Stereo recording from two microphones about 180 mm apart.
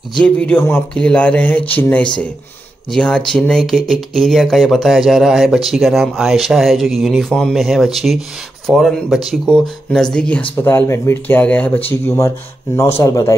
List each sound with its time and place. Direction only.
0.2 s speech: 5° left (ahead or behind)
13.0 s speech: 20° left (ahead or behind)